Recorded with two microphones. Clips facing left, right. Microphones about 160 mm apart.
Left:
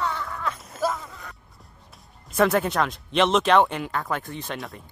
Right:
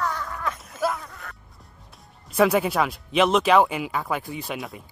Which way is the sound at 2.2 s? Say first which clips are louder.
Right 1 dB; 5° right (ahead or behind).